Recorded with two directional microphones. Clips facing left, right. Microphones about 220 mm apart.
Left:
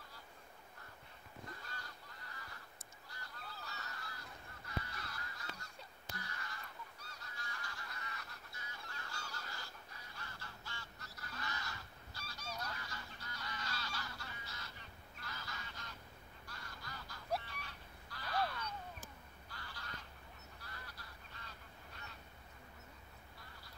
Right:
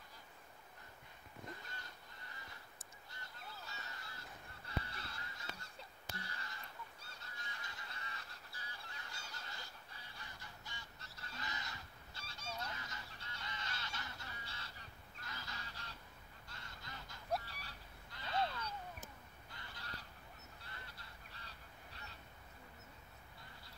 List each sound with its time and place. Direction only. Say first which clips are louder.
3.1 s honk: left 2 dB; 25° right (ahead or behind)
4.6 s goose: even; 30° right (ahead or behind)
8.9 s goose: left 4 dB; 20° right (ahead or behind)
10.4 s goose: left 2 dB; 15° right (ahead or behind)
17.5 s bird: left 3 dB; 35° right (ahead or behind)
18.1 s crow: even; 25° right (ahead or behind)
19.5 s honk: left 1 dB; 20° right (ahead or behind)